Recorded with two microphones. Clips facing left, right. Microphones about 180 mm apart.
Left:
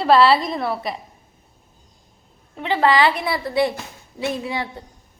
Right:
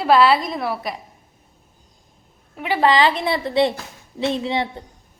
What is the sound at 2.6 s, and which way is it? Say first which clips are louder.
A woman's voice: even; 10° right (ahead or behind).